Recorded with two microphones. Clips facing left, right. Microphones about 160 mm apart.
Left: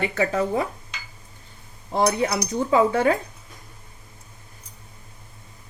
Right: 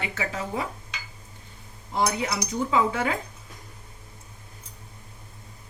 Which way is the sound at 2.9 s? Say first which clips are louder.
Left 7 dB; 35° left (ahead or behind).